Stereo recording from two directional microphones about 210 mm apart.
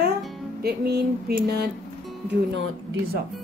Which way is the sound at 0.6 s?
50° right (ahead or behind).